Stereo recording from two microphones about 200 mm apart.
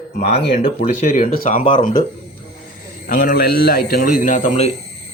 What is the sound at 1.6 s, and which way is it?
Speech, 25° left (ahead or behind).